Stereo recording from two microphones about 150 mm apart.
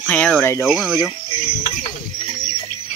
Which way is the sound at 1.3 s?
35° left (ahead or behind).